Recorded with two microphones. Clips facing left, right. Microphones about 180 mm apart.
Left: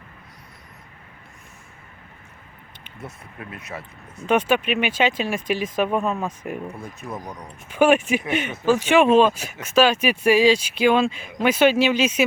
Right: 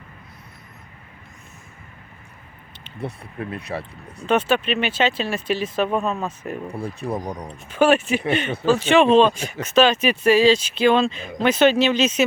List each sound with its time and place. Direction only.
3.0 s speech: 30° right (ahead or behind)
4.3 s speech: 10° left (ahead or behind)
6.7 s speech: 30° right (ahead or behind)
7.7 s speech: 10° left (ahead or behind)